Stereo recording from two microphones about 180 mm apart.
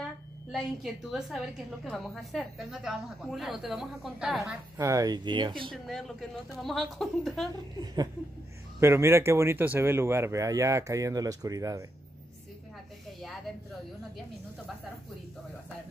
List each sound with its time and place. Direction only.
0.0 s a woman's voice: centre (ahead or behind)
4.7 s speech: 20° right (ahead or behind)
5.9 s a woman's voice: centre (ahead or behind)
7.8 s speech: 20° right (ahead or behind)
13.2 s a sound: centre (ahead or behind)